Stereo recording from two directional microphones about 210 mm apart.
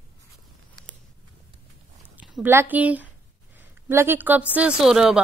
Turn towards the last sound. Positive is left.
turn(degrees=-5)  # may be behind; listen again after turning